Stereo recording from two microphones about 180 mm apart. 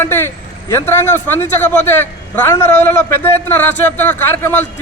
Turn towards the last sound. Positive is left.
turn(degrees=10)  # may be behind; listen again after turning